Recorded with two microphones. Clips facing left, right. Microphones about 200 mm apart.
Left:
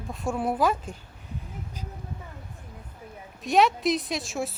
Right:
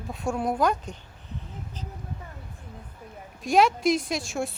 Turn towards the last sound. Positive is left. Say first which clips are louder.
# right 1 dB
turn(degrees=0)  # may be behind; listen again after turning